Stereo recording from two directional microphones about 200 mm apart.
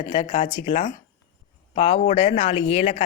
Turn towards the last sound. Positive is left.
turn(degrees=30)  # may be behind; listen again after turning